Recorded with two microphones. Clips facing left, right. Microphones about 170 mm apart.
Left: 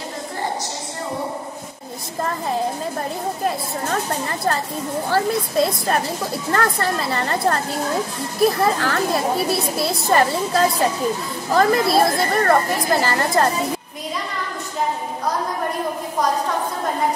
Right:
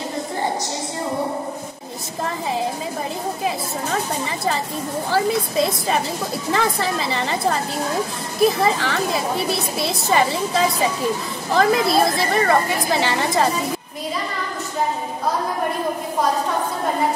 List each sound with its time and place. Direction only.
3.4 s a woman's voice: centre (ahead or behind)